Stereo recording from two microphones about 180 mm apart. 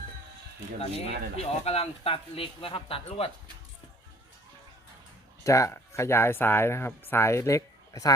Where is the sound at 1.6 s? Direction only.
35° left (ahead or behind).